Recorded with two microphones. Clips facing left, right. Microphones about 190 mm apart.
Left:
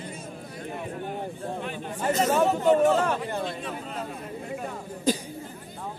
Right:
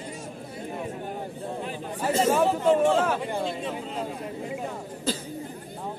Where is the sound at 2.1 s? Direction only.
30° right (ahead or behind).